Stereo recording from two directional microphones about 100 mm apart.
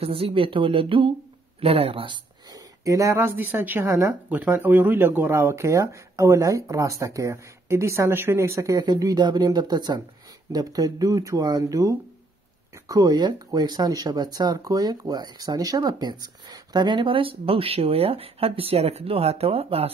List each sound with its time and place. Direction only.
0.0 s speech: 70° right (ahead or behind)
1.6 s speech: 75° right (ahead or behind); by 2.2 s 60° right (ahead or behind)
2.5 s speech: 35° right (ahead or behind); by 19.9 s 80° right